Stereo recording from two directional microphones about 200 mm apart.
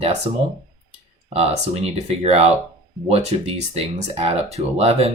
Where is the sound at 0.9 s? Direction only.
30° right (ahead or behind).